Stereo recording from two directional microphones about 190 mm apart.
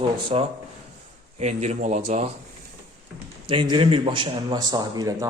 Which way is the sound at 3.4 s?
25° right (ahead or behind).